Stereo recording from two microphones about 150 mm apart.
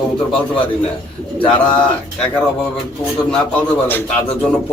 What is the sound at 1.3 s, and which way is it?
Speech, 5° left (ahead or behind).